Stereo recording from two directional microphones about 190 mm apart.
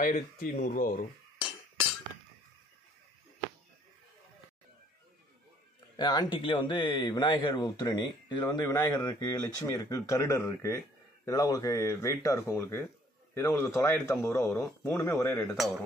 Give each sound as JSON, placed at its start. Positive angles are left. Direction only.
{"t": 0.0, "sound": "speech", "side_deg": 45}
{"t": 5.9, "sound": "speech", "side_deg": 25}